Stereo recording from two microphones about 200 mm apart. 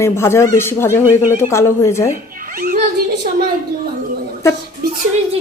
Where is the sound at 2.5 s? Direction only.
45° right (ahead or behind).